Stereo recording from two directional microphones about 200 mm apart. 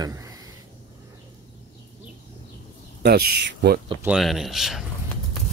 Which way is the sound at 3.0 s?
55° right (ahead or behind).